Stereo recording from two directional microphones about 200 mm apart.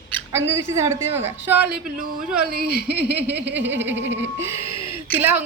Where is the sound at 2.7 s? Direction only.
55° left (ahead or behind).